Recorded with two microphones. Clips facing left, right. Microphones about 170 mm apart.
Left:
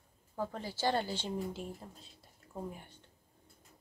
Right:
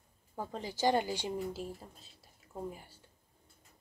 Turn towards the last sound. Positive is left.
turn(degrees=-5)  # may be behind; listen again after turning